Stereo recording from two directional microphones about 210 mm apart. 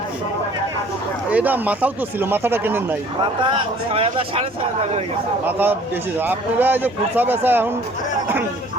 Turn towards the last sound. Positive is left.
turn(degrees=-10)  # may be behind; listen again after turning